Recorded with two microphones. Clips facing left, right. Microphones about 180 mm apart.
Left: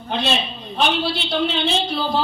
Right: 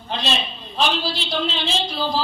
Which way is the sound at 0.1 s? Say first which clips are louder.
Left 3 dB; 60° left (ahead or behind).